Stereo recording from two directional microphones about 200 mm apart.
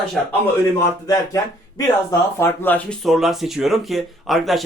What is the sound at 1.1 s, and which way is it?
Speech, 15° left (ahead or behind).